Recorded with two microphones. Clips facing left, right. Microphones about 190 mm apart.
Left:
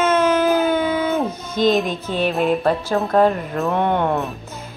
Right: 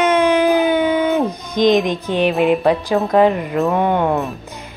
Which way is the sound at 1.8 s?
15° right (ahead or behind).